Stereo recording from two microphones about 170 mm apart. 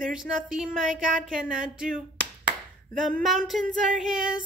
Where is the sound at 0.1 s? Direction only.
5° right (ahead or behind).